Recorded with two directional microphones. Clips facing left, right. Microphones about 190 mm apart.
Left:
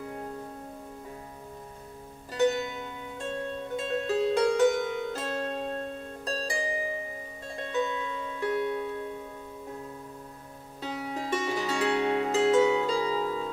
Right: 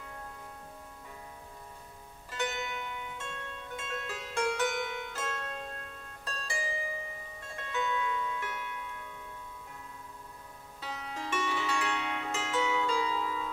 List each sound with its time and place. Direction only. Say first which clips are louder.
0.0 s music: left 9 dB; 25° left (ahead or behind)
2.3 s music: left 10 dB; 35° left (ahead or behind)
10.8 s music: left 7 dB; 35° left (ahead or behind)